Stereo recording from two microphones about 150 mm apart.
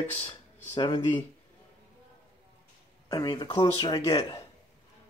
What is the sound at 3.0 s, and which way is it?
Speech, 25° left (ahead or behind).